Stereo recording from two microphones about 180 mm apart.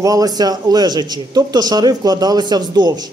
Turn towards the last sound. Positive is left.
turn(degrees=-25)  # may be behind; listen again after turning